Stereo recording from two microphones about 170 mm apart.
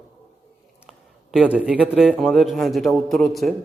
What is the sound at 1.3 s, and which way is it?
A man's voice, 5° right (ahead or behind).